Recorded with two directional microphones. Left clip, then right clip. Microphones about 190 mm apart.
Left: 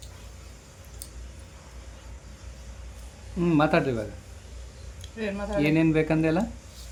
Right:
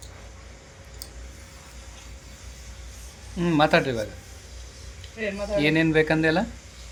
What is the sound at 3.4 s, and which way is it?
Speech, centre (ahead or behind).